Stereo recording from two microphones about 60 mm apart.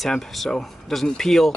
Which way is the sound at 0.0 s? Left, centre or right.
Centre.